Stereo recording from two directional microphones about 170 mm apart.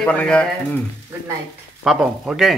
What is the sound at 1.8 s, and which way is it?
Speech, 5° right (ahead or behind).